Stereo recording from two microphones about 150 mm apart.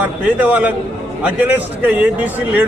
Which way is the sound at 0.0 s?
10° right (ahead or behind).